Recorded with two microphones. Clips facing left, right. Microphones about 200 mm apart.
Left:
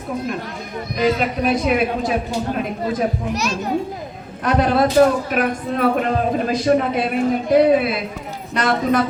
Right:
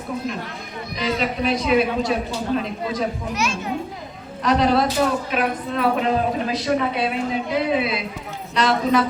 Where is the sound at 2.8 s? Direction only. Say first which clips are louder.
Left 4 dB; 40° left (ahead or behind).